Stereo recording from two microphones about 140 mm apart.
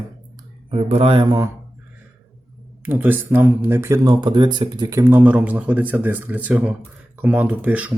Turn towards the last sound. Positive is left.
turn(degrees=-10)  # may be behind; listen again after turning